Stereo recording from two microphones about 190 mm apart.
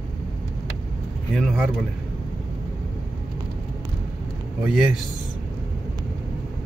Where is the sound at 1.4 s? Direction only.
5° right (ahead or behind).